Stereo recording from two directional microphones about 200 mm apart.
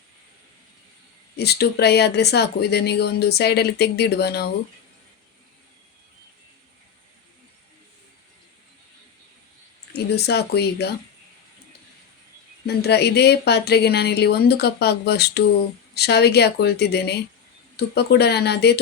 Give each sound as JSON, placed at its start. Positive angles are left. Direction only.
{"t": 1.4, "sound": "speech", "side_deg": 55}
{"t": 9.9, "sound": "speech", "side_deg": 55}
{"t": 12.6, "sound": "speech", "side_deg": 55}